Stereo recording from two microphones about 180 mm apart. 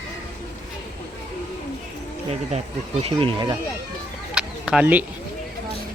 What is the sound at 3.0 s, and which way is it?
Speech, 30° right (ahead or behind).